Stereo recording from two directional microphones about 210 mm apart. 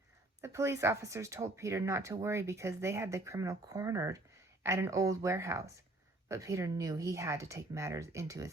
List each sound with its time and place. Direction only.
0.4 s speech: 15° right (ahead or behind)